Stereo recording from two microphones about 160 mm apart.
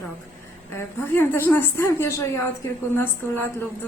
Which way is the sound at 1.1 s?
10° left (ahead or behind).